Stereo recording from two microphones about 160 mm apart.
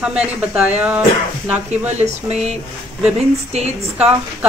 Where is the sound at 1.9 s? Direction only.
45° right (ahead or behind).